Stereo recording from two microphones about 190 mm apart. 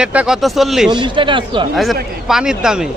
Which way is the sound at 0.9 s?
25° right (ahead or behind).